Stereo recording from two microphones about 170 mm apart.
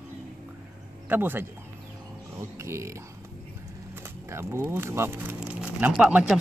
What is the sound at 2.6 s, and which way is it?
Speech, 15° right (ahead or behind).